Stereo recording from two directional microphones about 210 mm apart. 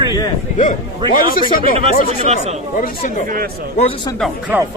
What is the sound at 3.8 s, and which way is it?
Speech, 25° left (ahead or behind).